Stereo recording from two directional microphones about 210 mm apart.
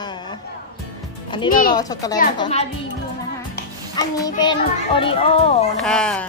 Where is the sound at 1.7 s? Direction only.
15° left (ahead or behind).